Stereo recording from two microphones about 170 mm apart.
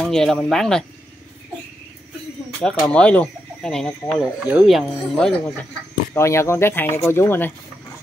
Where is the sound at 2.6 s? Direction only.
5° left (ahead or behind).